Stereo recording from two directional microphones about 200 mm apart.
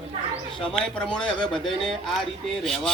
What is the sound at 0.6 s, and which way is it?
Speech, 5° left (ahead or behind).